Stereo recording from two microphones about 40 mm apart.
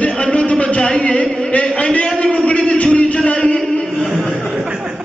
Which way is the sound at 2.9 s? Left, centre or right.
Left.